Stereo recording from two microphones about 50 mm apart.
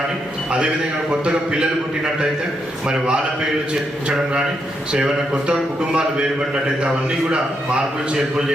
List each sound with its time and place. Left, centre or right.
1.1 s a man's voice: centre
2.8 s a man's voice: centre
4.9 s a man's voice: centre